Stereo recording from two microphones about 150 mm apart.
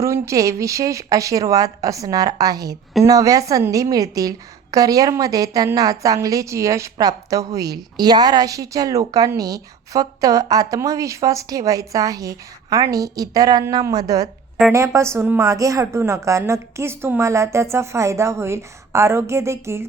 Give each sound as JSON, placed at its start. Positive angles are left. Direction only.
{"t": 0.0, "sound": "a woman's voice", "side_deg": -20}